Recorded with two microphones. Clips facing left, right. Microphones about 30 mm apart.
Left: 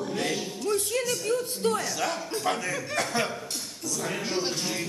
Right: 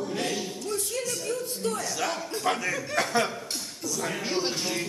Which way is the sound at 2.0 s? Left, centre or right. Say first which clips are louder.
Even; centre.